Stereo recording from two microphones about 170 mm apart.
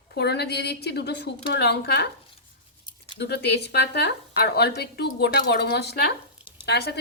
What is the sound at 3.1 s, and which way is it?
Speech, 75° left (ahead or behind).